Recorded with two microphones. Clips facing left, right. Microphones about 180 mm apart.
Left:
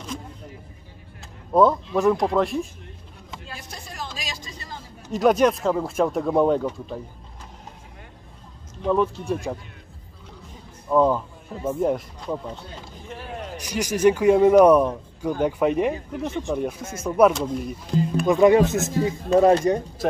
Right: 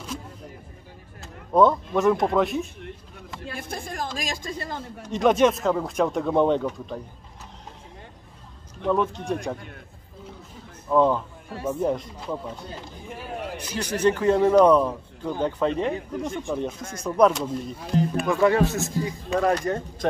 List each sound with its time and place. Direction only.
1.5 s speech: centre (ahead or behind)
3.4 s speech: 55° right (ahead or behind)
5.0 s speech: centre (ahead or behind)
8.8 s speech: centre (ahead or behind)
10.9 s speech: 5° left (ahead or behind)
13.6 s speech: 10° left (ahead or behind)
18.2 s speech: 20° left (ahead or behind)
20.0 s speech: 5° left (ahead or behind)